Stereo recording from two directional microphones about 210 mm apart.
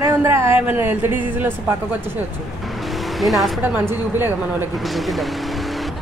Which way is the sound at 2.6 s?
Centre (ahead or behind).